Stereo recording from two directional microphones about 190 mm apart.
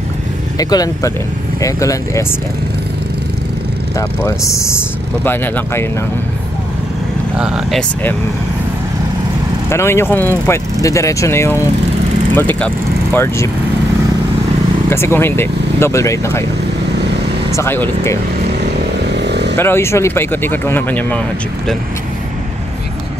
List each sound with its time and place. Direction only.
0.6 s speech: 20° left (ahead or behind)
4.2 s speech: 15° left (ahead or behind)
7.3 s speech: 5° right (ahead or behind)
9.7 s speech: 15° left (ahead or behind)
14.9 s speech: 15° left (ahead or behind)
17.5 s speech: 15° left (ahead or behind)
19.1 s chainsaw: 65° right (ahead or behind)
19.5 s speech: 10° left (ahead or behind)